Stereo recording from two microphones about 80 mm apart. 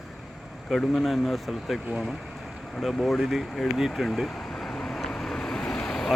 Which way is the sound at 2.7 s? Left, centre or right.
Centre.